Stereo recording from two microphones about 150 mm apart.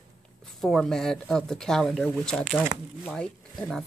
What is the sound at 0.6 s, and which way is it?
Speech, 5° left (ahead or behind).